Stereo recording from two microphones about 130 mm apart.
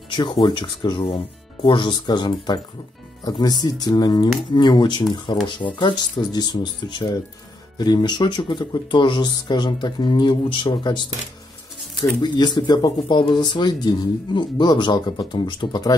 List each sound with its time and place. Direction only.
0.1 s speech: 35° left (ahead or behind)
12.2 s speech: 35° left (ahead or behind)